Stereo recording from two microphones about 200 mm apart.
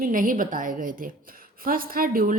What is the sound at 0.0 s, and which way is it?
A woman's voice, 45° right (ahead or behind).